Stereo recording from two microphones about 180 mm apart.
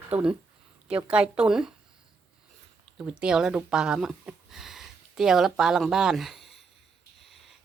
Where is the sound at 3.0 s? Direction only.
5° right (ahead or behind).